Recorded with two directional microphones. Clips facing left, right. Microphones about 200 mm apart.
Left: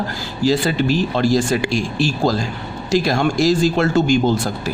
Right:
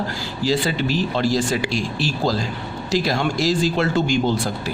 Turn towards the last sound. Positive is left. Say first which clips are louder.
# left 4 dB
turn(degrees=45)  # may be behind; listen again after turning